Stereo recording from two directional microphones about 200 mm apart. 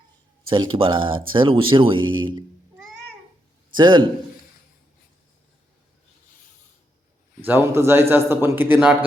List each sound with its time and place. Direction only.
0.4 s speech: 25° right (ahead or behind)
3.8 s speech: 25° right (ahead or behind)
7.4 s a man's voice: 10° right (ahead or behind)